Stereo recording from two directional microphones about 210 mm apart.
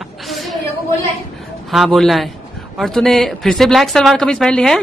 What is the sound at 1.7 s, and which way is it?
A woman's voice, centre (ahead or behind).